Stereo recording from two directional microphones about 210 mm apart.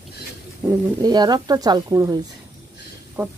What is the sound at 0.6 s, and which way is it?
Speech, 20° right (ahead or behind).